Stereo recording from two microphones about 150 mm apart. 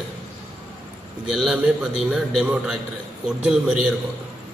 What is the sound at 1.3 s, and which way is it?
A man's voice, 5° right (ahead or behind).